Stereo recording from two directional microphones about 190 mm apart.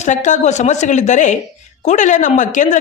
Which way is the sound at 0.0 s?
40° left (ahead or behind).